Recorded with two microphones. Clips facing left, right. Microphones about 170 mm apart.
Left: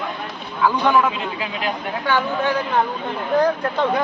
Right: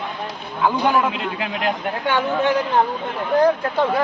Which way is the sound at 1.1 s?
60° right (ahead or behind).